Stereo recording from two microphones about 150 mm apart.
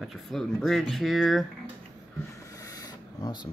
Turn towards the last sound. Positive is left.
turn(degrees=30)  # may be behind; listen again after turning